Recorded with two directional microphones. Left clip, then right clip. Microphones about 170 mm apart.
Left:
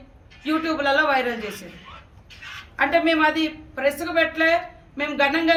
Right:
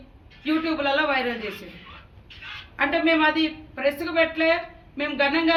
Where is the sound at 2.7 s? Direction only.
20° left (ahead or behind).